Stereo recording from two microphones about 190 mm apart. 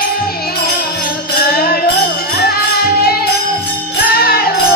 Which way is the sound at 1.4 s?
55° left (ahead or behind).